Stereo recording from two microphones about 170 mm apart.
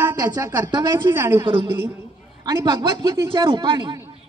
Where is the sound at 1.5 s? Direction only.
25° right (ahead or behind).